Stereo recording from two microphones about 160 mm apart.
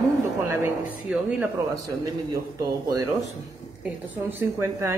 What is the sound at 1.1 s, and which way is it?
Speech, 5° right (ahead or behind).